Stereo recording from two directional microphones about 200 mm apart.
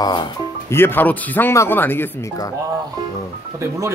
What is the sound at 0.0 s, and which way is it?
Speech, 20° left (ahead or behind).